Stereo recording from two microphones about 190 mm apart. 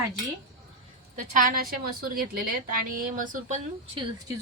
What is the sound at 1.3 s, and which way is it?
Speech, 45° right (ahead or behind).